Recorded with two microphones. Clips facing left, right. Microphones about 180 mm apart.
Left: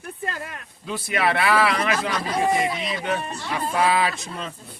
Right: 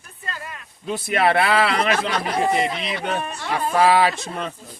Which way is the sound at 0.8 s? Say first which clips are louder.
Right 4 dB; 50° right (ahead or behind).